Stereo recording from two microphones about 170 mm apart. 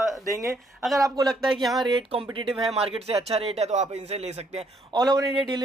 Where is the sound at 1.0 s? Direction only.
20° right (ahead or behind).